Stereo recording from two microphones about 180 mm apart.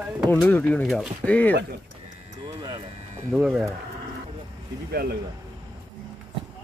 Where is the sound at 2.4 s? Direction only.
25° right (ahead or behind).